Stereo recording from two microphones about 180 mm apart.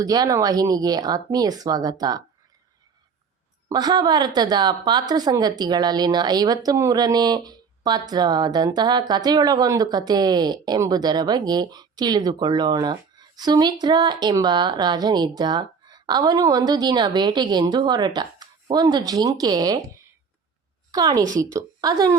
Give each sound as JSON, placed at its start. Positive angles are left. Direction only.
{"t": 0.0, "sound": "a woman's voice", "side_deg": -20}
{"t": 3.7, "sound": "a woman's voice", "side_deg": -20}
{"t": 20.9, "sound": "a woman's voice", "side_deg": -20}